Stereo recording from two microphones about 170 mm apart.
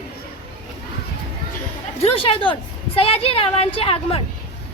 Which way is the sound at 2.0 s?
35° left (ahead or behind).